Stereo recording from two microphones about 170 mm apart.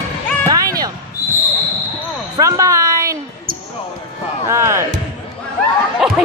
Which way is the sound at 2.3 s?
20° right (ahead or behind).